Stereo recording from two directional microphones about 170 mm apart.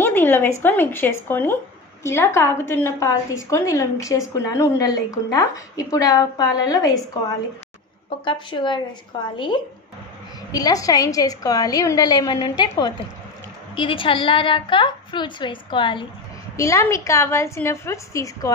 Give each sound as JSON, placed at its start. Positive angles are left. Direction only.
{"t": 0.0, "sound": "a woman's voice", "side_deg": 10}
{"t": 10.5, "sound": "a woman's voice", "side_deg": 20}
{"t": 16.5, "sound": "a woman's voice", "side_deg": 15}